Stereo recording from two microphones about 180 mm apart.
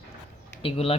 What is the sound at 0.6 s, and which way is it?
Speech, 35° left (ahead or behind).